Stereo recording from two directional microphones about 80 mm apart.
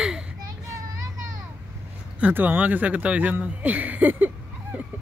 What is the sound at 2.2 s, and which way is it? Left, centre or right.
Speech, right.